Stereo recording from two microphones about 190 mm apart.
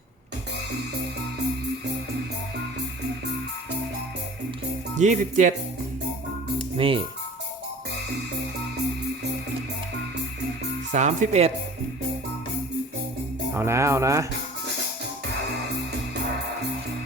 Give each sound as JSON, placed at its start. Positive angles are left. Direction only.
{"t": 4.9, "sound": "speech", "side_deg": -40}
{"t": 6.7, "sound": "speech", "side_deg": -30}
{"t": 10.9, "sound": "speech", "side_deg": -40}
{"t": 13.5, "sound": "speech", "side_deg": -15}